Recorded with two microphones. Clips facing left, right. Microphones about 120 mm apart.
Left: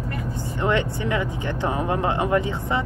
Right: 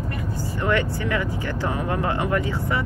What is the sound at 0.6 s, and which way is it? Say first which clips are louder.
Speech: left 1 dB; 20° left (ahead or behind).